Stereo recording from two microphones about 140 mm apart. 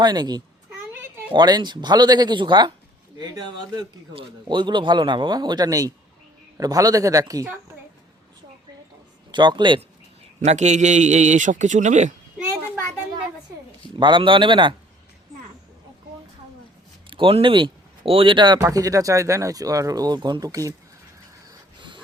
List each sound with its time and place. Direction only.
0.0 s speech: 30° right (ahead or behind)
4.1 s speech: 35° right (ahead or behind)
9.3 s speech: 30° right (ahead or behind)
10.4 s a man's voice: 55° right (ahead or behind)
14.0 s speech: 35° right (ahead or behind)
17.1 s speech: 40° right (ahead or behind); by 20.7 s 25° right (ahead or behind)
21.5 s a sound: 35° right (ahead or behind)